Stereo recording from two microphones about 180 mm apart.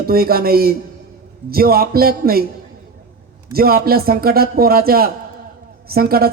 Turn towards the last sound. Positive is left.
turn(degrees=-55)  # may be behind; listen again after turning